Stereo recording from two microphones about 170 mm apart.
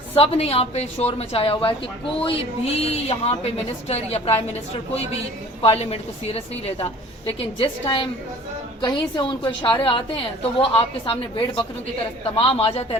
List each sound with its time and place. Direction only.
0.2 s a woman's voice: 35° left (ahead or behind)
5.6 s a woman's voice: 40° left (ahead or behind)